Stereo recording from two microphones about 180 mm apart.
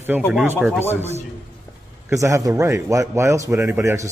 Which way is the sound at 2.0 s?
15° right (ahead or behind).